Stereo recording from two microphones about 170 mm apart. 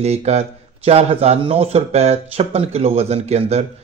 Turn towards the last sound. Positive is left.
turn(degrees=-40)  # may be behind; listen again after turning